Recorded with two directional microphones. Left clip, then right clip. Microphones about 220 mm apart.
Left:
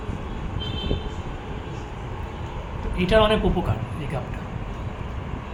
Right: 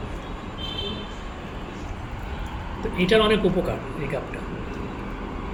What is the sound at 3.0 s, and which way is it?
Speech, 25° left (ahead or behind).